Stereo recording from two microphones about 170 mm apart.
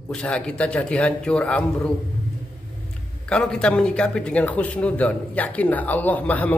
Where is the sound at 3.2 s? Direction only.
5° left (ahead or behind).